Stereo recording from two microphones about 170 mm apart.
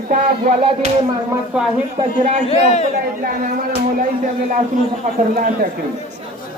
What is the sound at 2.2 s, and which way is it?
Speech, 50° right (ahead or behind).